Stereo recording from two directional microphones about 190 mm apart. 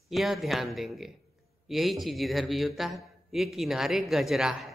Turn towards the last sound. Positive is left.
turn(degrees=0)  # may be behind; listen again after turning